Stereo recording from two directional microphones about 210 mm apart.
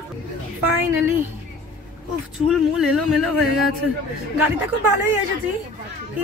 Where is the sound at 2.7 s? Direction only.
Centre (ahead or behind).